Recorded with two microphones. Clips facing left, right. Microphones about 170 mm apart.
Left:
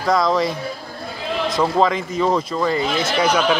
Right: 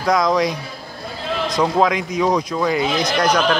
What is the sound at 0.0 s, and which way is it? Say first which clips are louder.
Speech: right 1 dB; centre (ahead or behind).